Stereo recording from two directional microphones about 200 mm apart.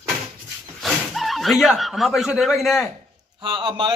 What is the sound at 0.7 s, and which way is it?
Speech, centre (ahead or behind).